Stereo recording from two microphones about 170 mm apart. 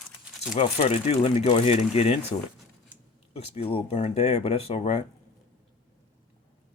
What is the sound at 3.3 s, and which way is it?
Speech, 35° left (ahead or behind).